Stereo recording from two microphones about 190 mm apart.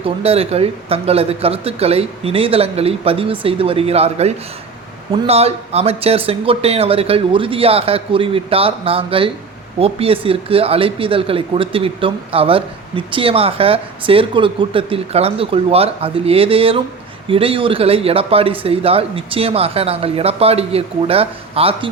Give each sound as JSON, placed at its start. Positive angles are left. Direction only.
{"t": 0.0, "sound": "speech", "side_deg": -30}